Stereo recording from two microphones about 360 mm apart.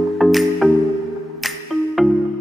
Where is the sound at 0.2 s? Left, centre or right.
Centre.